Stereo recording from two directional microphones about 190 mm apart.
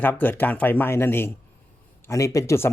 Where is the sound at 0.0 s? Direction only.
10° left (ahead or behind).